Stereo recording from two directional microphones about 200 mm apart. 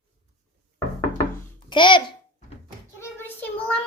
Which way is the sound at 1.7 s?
25° left (ahead or behind).